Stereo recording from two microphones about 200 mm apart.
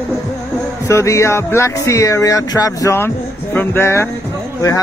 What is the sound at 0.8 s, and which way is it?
Speech, 15° left (ahead or behind).